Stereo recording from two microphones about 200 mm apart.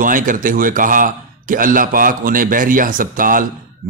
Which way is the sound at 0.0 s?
40° right (ahead or behind).